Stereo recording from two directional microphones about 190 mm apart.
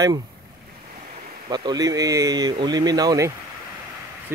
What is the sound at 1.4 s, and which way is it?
Speech, 20° right (ahead or behind).